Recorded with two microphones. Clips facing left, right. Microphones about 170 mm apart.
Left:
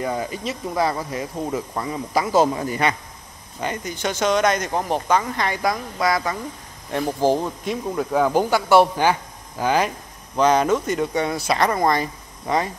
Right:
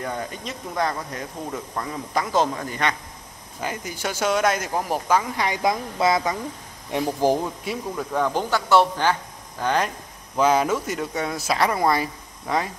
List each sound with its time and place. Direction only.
0.0 s speech: 5° left (ahead or behind)
3.6 s speech: 5° right (ahead or behind)
7.9 s speech: 5° left (ahead or behind)